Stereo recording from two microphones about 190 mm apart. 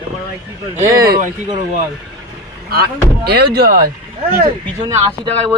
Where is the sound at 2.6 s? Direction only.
55° right (ahead or behind).